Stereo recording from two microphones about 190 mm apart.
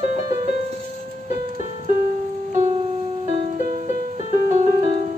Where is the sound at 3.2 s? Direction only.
45° right (ahead or behind).